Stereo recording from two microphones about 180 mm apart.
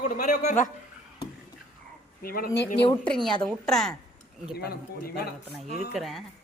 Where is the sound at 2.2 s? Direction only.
55° left (ahead or behind).